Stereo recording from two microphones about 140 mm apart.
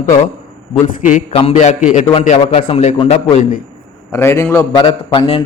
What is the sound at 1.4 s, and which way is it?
Speech, 50° left (ahead or behind).